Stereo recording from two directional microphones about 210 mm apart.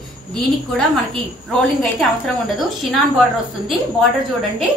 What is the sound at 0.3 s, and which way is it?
A woman's voice, 5° left (ahead or behind).